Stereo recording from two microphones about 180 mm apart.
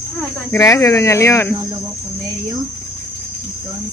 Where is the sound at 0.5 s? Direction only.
15° left (ahead or behind).